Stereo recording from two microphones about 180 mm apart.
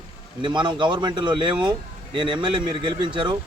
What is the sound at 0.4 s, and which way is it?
Speech, 25° right (ahead or behind).